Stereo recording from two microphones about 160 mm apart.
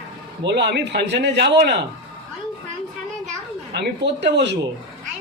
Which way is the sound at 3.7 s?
90° right.